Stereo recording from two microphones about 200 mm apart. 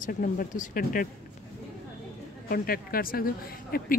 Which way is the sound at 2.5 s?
45° left (ahead or behind).